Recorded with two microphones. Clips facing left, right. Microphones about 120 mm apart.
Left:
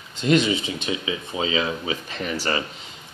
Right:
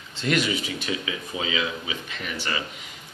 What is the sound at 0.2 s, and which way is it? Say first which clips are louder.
Speech: left 5 dB; 25° left (ahead or behind).